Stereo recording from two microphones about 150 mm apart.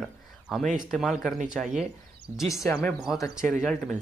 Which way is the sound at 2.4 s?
20° left (ahead or behind).